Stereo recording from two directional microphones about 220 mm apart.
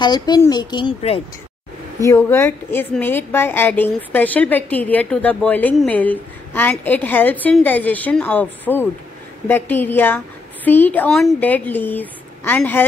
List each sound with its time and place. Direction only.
0.0 s speech: 20° left (ahead or behind)
2.0 s a woman's voice: 10° left (ahead or behind)